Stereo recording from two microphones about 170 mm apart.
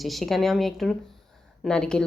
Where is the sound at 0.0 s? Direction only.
Centre (ahead or behind).